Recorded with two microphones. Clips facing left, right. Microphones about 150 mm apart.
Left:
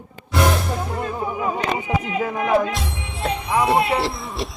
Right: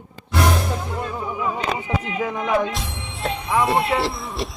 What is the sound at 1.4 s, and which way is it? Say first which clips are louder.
Speech: even; 50° left (ahead or behind).